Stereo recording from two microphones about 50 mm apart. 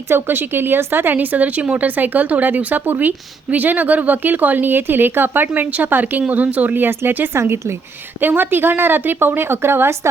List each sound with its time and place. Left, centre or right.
0.1 s speech: right
7.3 s a woman's voice: right
8.2 s speech: right